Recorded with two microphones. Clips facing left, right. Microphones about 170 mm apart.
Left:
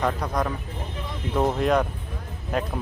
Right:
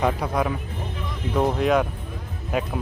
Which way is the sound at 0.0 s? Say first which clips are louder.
Right 2 dB; 10° right (ahead or behind).